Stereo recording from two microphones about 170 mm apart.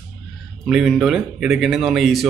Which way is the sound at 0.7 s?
5° right (ahead or behind).